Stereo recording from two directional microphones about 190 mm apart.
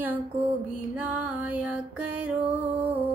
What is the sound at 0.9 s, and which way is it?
Music, 5° right (ahead or behind).